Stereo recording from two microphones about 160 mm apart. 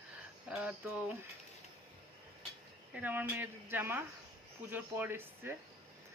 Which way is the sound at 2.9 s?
10° right (ahead or behind).